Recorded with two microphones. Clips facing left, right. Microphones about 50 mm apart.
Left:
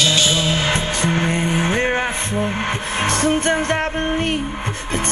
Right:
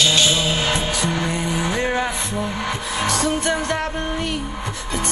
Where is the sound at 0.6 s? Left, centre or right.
Left.